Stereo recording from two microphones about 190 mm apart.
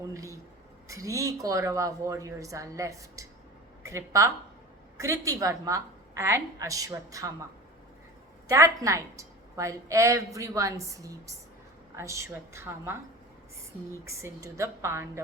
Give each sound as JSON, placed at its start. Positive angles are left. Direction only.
{"t": 0.1, "sound": "a woman's voice", "side_deg": -15}
{"t": 8.4, "sound": "a woman's voice", "side_deg": -15}
{"t": 14.0, "sound": "a woman's voice", "side_deg": -15}